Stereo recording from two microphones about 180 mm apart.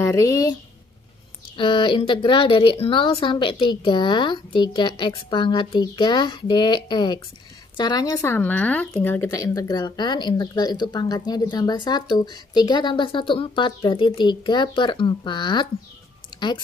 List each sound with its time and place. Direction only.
0.0 s speech: 15° left (ahead or behind)
1.6 s speech: 30° left (ahead or behind)